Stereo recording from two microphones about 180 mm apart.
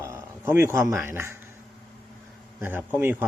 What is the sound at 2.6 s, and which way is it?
Speech, 10° right (ahead or behind).